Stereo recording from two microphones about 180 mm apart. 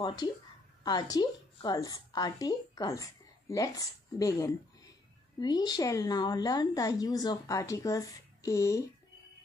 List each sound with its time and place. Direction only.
0.0 s a woman's voice: 20° left (ahead or behind)